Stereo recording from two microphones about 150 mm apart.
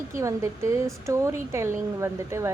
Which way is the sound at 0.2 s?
20° right (ahead or behind).